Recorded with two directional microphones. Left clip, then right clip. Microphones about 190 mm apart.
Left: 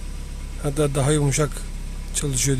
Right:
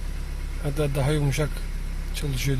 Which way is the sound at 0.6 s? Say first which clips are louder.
Left 5 dB; 25° left (ahead or behind).